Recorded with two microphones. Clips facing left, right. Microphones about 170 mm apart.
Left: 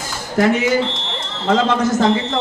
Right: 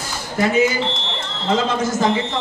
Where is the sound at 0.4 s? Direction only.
65° left (ahead or behind).